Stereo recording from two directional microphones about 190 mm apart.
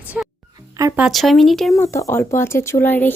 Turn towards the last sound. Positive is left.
turn(degrees=10)  # may be behind; listen again after turning